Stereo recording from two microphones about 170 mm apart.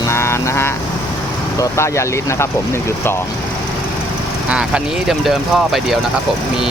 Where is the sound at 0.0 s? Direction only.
15° left (ahead or behind).